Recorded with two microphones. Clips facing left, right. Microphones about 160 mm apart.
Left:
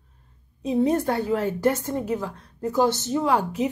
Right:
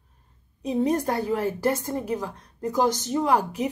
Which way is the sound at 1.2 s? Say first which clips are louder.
Left 1 dB; 10° right (ahead or behind).